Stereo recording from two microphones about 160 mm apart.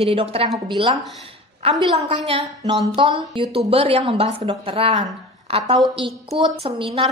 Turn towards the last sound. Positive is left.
turn(degrees=-35)  # may be behind; listen again after turning